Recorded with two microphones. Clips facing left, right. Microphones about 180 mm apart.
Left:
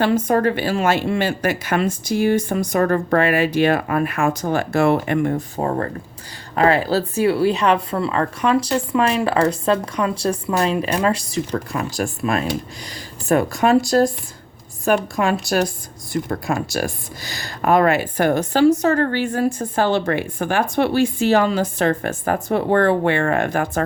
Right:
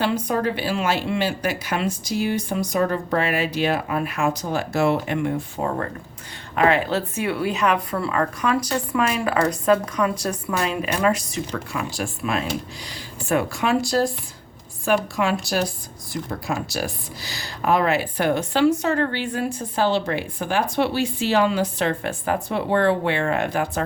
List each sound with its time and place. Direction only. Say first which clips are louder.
0.0 s a woman's voice: left 5 dB; 50° left (ahead or behind)
15.1 s speech: left 3 dB; 45° left (ahead or behind)